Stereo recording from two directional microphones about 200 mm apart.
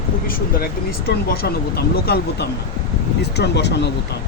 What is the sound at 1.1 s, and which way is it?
Speech, 50° left (ahead or behind).